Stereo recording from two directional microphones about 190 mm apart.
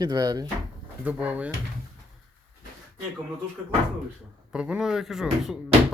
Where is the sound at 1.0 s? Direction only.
5° right (ahead or behind).